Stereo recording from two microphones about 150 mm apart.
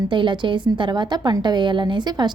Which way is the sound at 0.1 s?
35° right (ahead or behind).